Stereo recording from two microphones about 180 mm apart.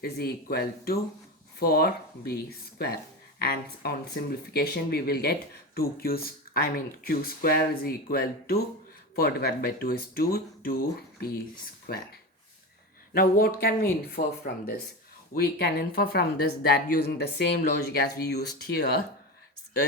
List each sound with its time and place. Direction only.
0.0 s speech: 60° left (ahead or behind)
13.1 s speech: 55° left (ahead or behind)